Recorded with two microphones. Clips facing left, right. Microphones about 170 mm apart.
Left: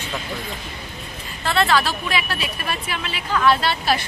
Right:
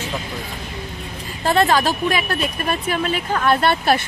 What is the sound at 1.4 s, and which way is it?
Speech, 40° right (ahead or behind).